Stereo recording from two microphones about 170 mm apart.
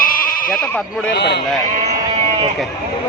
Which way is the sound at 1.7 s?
40° right (ahead or behind).